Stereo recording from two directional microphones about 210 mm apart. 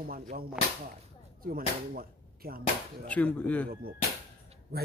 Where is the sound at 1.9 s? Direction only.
45° right (ahead or behind).